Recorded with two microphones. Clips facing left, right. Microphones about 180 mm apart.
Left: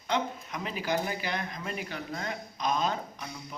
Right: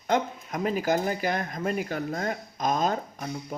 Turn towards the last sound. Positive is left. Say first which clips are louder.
# right 7 dB
turn(degrees=-45)  # may be behind; listen again after turning